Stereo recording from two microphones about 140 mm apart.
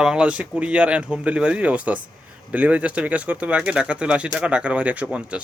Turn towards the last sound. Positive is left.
turn(degrees=-10)  # may be behind; listen again after turning